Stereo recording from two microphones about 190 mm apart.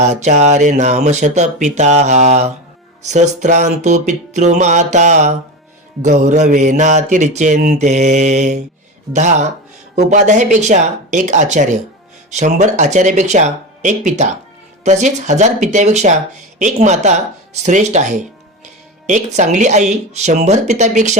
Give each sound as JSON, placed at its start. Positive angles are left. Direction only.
{"t": 0.0, "sound": "speech", "side_deg": -35}